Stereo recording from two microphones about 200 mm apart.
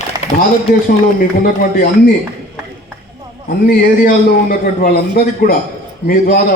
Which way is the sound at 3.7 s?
45° left (ahead or behind).